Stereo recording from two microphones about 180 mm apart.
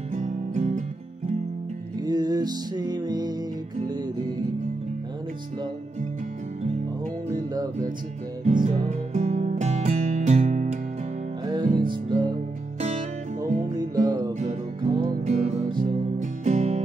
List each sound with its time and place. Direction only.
0.1 s music: 45° right (ahead or behind)
2.0 s music: 20° right (ahead or behind)
7.2 s music: 20° right (ahead or behind)
8.5 s music: 45° right (ahead or behind)
11.4 s music: 25° right (ahead or behind)
13.7 s music: 20° right (ahead or behind)
14.4 s music: 35° right (ahead or behind)
15.7 s music: 50° right (ahead or behind)